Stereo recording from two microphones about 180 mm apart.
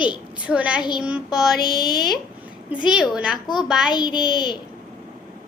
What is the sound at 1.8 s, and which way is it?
Speech, 25° left (ahead or behind).